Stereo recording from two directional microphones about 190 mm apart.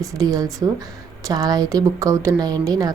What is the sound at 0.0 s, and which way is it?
A woman's voice, 20° right (ahead or behind).